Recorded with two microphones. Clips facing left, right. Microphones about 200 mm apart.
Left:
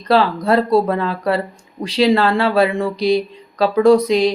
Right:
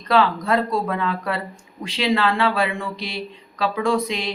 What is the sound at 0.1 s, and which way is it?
Speech, 35° left (ahead or behind).